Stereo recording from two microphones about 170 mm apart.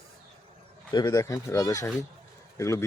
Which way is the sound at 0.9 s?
20° left (ahead or behind).